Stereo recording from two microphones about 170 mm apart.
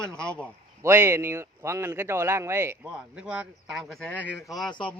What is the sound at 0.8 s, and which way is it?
A man's voice, 15° right (ahead or behind).